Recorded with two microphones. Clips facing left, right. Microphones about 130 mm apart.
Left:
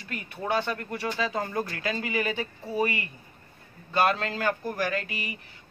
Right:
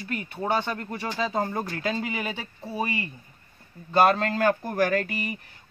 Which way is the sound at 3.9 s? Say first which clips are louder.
Right 5 dB; 40° right (ahead or behind).